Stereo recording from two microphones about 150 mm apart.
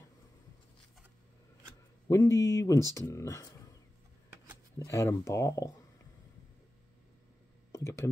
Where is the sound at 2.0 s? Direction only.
20° left (ahead or behind).